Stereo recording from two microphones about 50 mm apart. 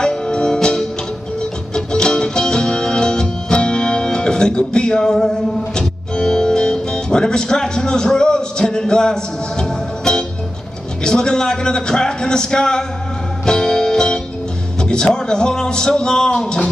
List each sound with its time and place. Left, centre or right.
0.0 s music: centre
1.9 s music: centre
11.1 s speech: centre
13.5 s music: centre
14.8 s speech: centre